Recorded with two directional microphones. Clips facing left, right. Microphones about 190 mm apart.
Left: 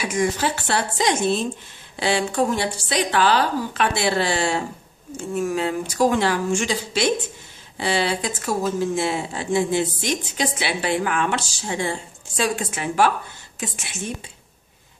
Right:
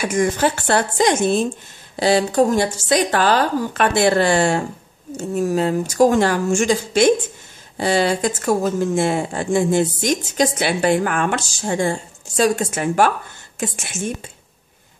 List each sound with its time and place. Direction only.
0.0 s speech: 50° right (ahead or behind)
5.1 s speech: 40° right (ahead or behind)